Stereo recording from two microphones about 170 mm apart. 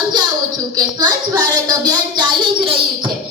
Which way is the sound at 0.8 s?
25° right (ahead or behind).